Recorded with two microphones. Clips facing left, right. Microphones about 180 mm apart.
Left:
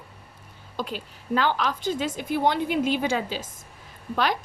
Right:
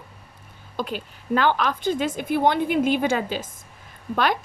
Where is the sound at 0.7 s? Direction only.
55° right (ahead or behind).